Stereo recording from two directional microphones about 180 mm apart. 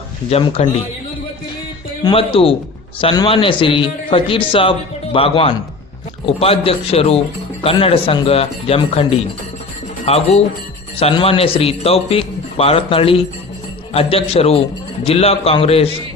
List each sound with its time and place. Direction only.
0.3 s a man's voice: 35° left (ahead or behind)
2.0 s a man's voice: 30° left (ahead or behind)
10.1 s a man's voice: 35° left (ahead or behind)